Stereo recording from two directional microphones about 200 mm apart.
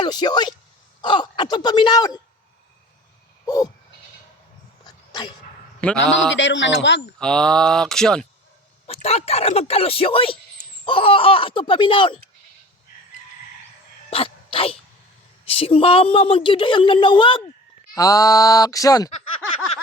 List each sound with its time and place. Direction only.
0.0 s speech: 20° left (ahead or behind)
3.4 s a sound: 20° left (ahead or behind)
6.3 s speech: 65° left (ahead or behind)
7.2 s speech: 5° left (ahead or behind)
8.9 s speech: 30° left (ahead or behind)
14.1 s speech: 25° left (ahead or behind)